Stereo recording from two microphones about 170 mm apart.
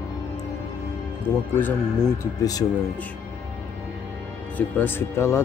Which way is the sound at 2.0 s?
20° left (ahead or behind).